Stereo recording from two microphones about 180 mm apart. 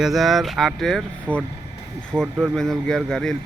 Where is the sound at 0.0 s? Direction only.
Centre (ahead or behind).